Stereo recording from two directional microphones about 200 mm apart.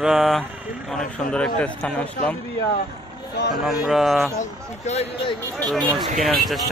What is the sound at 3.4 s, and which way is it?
Speech, 55° left (ahead or behind).